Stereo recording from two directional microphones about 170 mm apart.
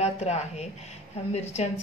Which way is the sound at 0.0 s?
40° left (ahead or behind).